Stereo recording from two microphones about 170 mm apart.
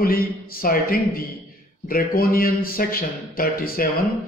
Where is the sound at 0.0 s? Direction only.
60° left (ahead or behind).